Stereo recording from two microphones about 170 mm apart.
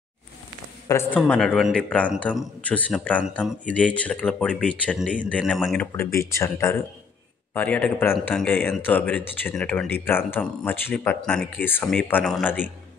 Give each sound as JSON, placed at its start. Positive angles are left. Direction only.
{"t": 0.8, "sound": "speech", "side_deg": 15}
{"t": 1.2, "sound": "speech", "side_deg": 0}
{"t": 5.9, "sound": "speech", "side_deg": 15}